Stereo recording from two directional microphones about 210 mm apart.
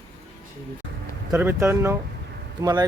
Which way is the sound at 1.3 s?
10° right (ahead or behind).